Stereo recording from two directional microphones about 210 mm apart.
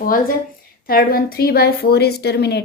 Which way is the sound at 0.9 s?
45° left (ahead or behind).